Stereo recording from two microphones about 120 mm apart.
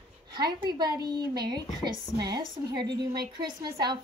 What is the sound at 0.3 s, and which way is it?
A woman's voice, 40° right (ahead or behind).